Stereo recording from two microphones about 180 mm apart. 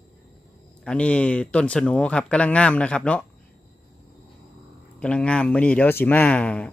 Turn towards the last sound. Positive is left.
turn(degrees=5)  # may be behind; listen again after turning